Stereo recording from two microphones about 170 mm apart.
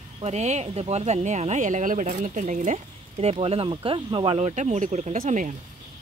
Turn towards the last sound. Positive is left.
turn(degrees=-50)  # may be behind; listen again after turning